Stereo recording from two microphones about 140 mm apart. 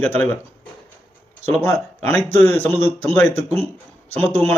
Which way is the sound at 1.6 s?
15° left (ahead or behind).